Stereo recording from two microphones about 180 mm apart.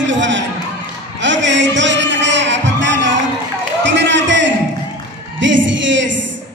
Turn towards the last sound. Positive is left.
turn(degrees=-90)